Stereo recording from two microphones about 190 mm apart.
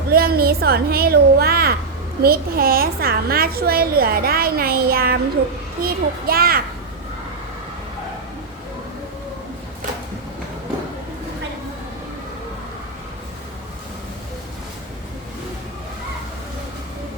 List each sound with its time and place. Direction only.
0.1 s a woman's voice: 55° right (ahead or behind)